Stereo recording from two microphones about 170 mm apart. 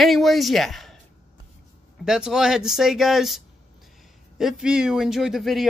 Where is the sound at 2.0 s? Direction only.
5° right (ahead or behind).